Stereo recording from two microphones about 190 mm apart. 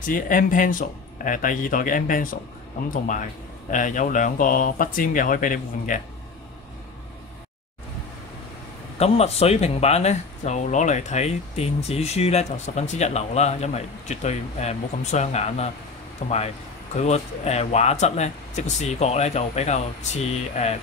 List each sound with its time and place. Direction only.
0.0 s speech: 45° left (ahead or behind)
8.9 s speech: 35° left (ahead or behind)